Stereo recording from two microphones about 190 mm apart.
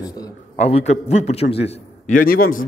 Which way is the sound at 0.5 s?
35° left (ahead or behind).